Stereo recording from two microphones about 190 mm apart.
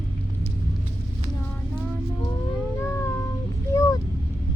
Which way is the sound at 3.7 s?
15° left (ahead or behind).